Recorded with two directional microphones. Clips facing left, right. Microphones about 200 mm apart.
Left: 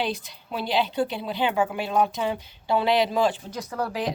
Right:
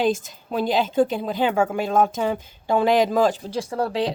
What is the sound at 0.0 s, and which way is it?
A woman's voice, 45° right (ahead or behind).